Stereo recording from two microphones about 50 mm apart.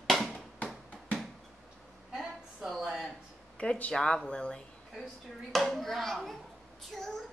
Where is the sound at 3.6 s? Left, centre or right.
Left.